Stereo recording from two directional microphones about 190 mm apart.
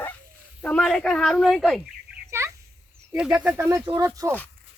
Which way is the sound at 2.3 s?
15° right (ahead or behind).